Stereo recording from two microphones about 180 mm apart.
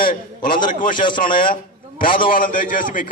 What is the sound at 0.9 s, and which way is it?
Speech, 25° left (ahead or behind).